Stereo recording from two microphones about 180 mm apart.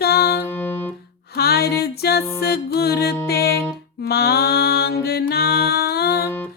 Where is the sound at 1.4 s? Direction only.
60° left (ahead or behind).